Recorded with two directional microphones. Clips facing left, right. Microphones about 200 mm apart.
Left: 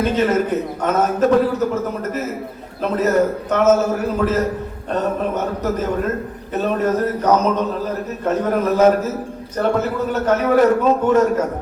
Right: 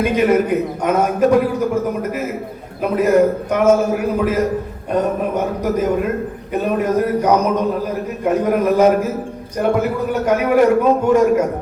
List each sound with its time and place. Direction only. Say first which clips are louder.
0.0 s a man's voice: right 2 dB; 10° right (ahead or behind)